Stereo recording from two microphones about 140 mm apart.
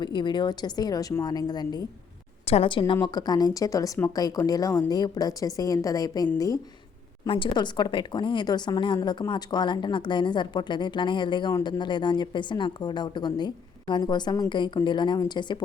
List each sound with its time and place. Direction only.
0.0 s a woman's voice: 35° left (ahead or behind)
2.5 s a woman's voice: 40° left (ahead or behind); by 6.6 s 25° left (ahead or behind)
7.3 s speech: 35° left (ahead or behind)